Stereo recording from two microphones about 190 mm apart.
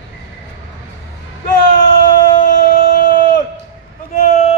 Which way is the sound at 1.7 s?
45° left (ahead or behind).